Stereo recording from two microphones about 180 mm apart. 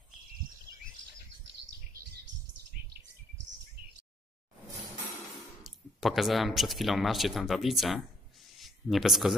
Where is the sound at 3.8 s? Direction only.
60° right (ahead or behind).